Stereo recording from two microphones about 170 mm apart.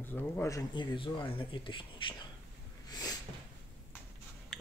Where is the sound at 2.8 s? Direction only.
20° left (ahead or behind).